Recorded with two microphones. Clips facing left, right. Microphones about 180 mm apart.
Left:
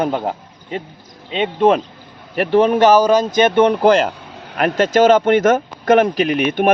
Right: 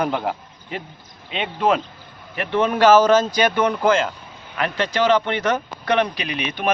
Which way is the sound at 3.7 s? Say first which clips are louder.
Left 5 dB; 40° left (ahead or behind).